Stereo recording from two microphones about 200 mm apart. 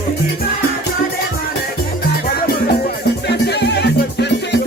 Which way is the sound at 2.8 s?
55° left (ahead or behind).